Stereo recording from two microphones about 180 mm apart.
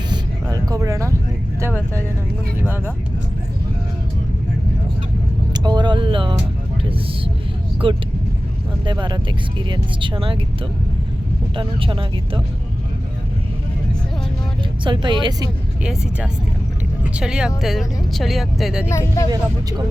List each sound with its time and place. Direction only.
0.5 s a sound: 20° right (ahead or behind)
1.6 s speech: 15° right (ahead or behind)
5.5 s music: 25° right (ahead or behind)
7.8 s speech: 30° right (ahead or behind)
11.5 s speech: 25° right (ahead or behind)
14.8 s speech: 25° right (ahead or behind)
15.8 s speech: 5° right (ahead or behind)
18.9 s speech: 15° left (ahead or behind)